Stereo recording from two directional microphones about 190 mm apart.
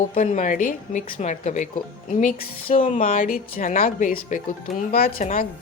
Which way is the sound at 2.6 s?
30° left (ahead or behind).